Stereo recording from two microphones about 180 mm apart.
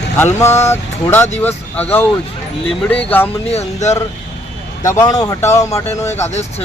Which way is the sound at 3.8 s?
15° left (ahead or behind).